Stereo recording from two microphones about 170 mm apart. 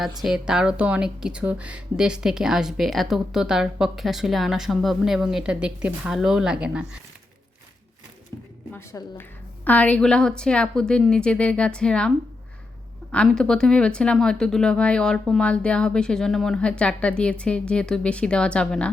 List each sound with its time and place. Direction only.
0.2 s speech: 5° right (ahead or behind)
8.7 s a woman's voice: 15° left (ahead or behind)